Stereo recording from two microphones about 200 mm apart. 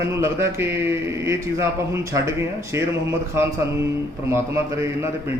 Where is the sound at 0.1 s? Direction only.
15° right (ahead or behind).